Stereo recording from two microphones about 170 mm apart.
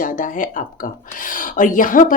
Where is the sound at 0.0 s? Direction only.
50° left (ahead or behind).